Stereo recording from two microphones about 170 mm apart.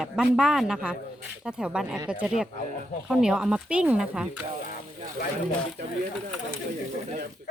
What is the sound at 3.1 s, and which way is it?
Speech, 5° right (ahead or behind).